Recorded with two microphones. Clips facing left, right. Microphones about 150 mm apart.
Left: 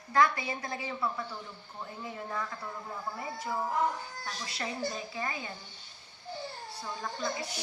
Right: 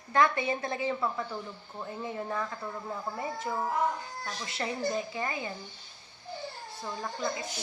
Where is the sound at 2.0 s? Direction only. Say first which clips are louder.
Right 4 dB; 25° right (ahead or behind).